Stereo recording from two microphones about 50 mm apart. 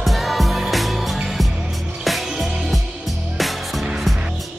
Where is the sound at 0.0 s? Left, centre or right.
Centre.